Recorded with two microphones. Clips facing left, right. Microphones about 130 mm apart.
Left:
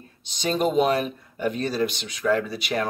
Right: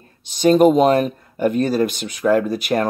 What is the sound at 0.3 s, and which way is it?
Speech, 50° right (ahead or behind).